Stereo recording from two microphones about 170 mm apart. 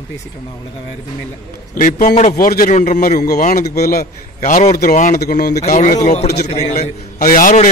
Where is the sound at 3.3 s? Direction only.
45° left (ahead or behind).